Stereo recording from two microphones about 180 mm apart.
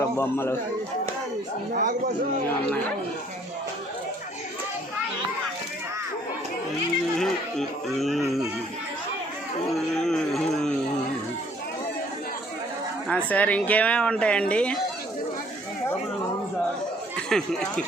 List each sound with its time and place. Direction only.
0.0 s speech: 15° left (ahead or behind)
1.7 s a man's voice: 45° right (ahead or behind)
2.6 s speech: 10° left (ahead or behind)
7.2 s speech: centre (ahead or behind)
9.7 s a sound: centre (ahead or behind)
13.1 s speech: 5° left (ahead or behind)
17.2 s speech: 5° left (ahead or behind)